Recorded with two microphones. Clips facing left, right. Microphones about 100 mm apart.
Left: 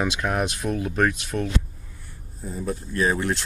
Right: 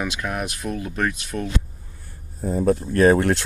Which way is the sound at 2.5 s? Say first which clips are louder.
Right 10 dB; 50° right (ahead or behind).